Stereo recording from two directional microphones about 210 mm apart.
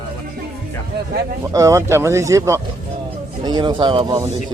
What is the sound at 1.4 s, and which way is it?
A man's voice, 15° right (ahead or behind).